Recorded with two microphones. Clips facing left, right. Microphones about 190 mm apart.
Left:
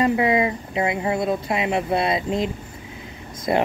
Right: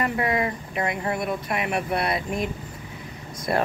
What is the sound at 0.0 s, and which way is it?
Speech, 20° left (ahead or behind).